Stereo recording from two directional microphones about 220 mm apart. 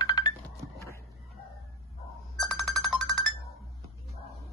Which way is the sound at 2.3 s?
Centre (ahead or behind).